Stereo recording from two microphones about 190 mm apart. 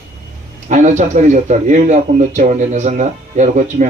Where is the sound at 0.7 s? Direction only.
40° right (ahead or behind).